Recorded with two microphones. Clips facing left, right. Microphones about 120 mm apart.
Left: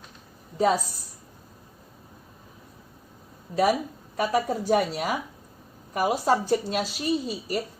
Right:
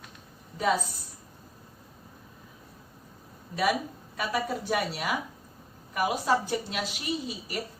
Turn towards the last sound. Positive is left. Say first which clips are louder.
# left 6 dB
turn(degrees=40)  # may be behind; listen again after turning